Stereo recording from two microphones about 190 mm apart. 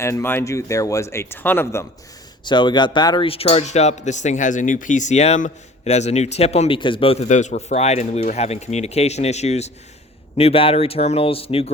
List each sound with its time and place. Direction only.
0.0 s speech: 15° left (ahead or behind)
2.4 s speech: 25° left (ahead or behind)